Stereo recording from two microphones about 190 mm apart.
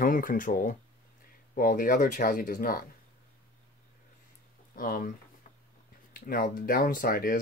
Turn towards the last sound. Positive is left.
turn(degrees=50)  # may be behind; listen again after turning